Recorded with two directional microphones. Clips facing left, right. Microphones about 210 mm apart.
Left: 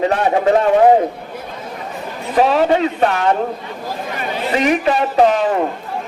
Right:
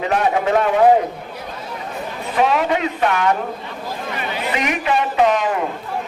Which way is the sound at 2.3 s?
35° left (ahead or behind).